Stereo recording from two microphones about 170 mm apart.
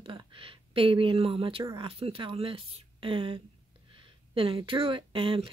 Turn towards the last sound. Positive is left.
turn(degrees=-30)  # may be behind; listen again after turning